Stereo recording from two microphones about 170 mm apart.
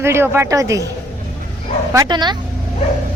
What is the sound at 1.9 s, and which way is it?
Speech, 25° right (ahead or behind).